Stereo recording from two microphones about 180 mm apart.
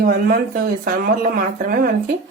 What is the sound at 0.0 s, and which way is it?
A woman's voice, 55° right (ahead or behind).